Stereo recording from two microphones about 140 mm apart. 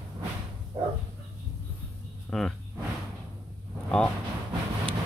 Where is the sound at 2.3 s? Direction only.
10° left (ahead or behind).